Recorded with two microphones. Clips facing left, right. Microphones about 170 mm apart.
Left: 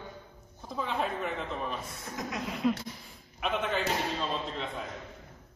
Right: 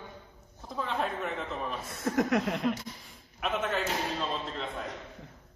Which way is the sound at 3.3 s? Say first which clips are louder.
Even; centre (ahead or behind).